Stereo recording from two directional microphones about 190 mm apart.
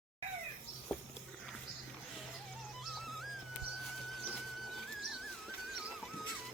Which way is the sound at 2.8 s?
Centre (ahead or behind).